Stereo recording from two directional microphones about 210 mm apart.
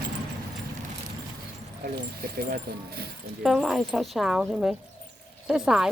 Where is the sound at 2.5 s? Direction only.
50° right (ahead or behind).